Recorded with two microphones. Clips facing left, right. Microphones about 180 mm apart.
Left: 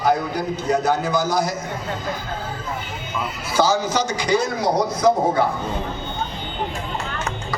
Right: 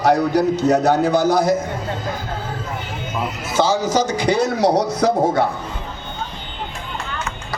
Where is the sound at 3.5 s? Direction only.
25° right (ahead or behind).